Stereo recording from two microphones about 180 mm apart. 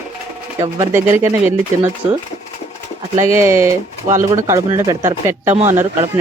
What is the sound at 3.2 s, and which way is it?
Speech, 15° right (ahead or behind).